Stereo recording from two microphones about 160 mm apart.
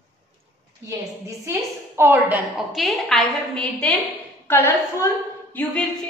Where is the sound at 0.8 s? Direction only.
15° right (ahead or behind).